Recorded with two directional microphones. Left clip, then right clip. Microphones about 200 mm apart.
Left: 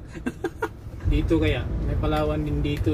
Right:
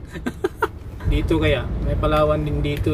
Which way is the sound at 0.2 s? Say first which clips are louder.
Right 6 dB; 25° right (ahead or behind).